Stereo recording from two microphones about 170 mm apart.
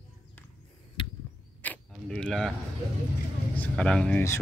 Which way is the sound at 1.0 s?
30° left (ahead or behind).